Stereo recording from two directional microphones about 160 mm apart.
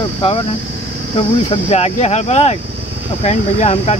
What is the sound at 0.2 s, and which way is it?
Speech, 35° left (ahead or behind).